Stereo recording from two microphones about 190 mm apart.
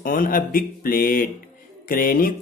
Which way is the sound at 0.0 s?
45° left (ahead or behind).